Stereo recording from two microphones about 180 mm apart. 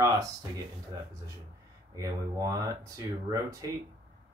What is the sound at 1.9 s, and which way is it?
Speech, 20° right (ahead or behind).